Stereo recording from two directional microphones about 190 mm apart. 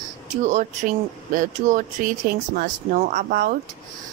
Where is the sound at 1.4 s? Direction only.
40° right (ahead or behind).